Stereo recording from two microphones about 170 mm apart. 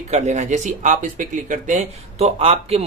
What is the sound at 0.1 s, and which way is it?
Speech, 40° right (ahead or behind).